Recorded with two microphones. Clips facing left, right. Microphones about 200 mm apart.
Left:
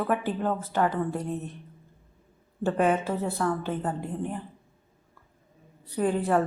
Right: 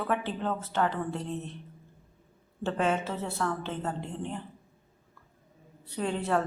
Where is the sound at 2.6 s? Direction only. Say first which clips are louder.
Left 4 dB; 15° left (ahead or behind).